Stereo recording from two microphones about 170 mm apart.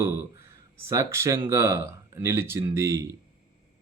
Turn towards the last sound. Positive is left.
turn(degrees=-15)  # may be behind; listen again after turning